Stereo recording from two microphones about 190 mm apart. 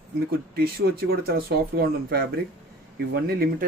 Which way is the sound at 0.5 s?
55° right (ahead or behind).